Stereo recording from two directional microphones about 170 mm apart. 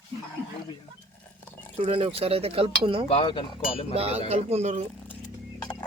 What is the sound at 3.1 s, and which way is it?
Speech, 35° left (ahead or behind).